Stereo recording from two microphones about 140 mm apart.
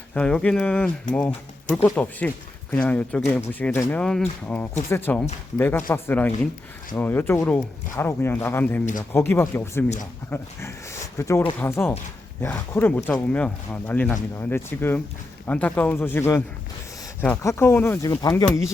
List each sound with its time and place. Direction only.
0.1 s speech: 10° left (ahead or behind); by 18.7 s 25° left (ahead or behind)